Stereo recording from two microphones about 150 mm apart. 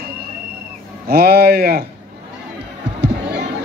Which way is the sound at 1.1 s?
90° right.